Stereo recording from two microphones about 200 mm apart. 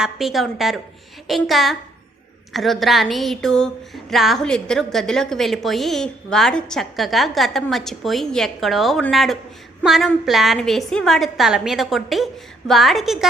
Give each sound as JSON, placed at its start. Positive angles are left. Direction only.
{"t": 0.0, "sound": "speech", "side_deg": 0}